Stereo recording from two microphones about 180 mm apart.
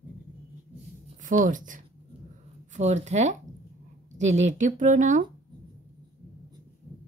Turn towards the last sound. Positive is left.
turn(degrees=-45)  # may be behind; listen again after turning